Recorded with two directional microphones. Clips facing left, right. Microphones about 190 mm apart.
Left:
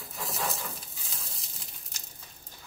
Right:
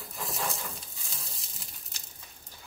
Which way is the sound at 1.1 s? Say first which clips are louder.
Even; centre (ahead or behind).